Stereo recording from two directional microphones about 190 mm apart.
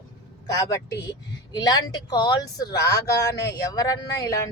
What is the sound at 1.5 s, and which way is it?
Speech, 20° left (ahead or behind).